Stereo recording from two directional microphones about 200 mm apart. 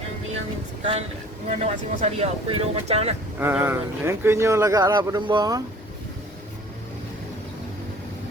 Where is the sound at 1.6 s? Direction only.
30° right (ahead or behind).